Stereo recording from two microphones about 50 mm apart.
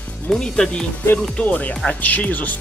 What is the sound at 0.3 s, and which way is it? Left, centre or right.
Speech, centre.